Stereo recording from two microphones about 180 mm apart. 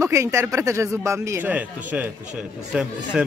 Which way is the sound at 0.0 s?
15° right (ahead or behind).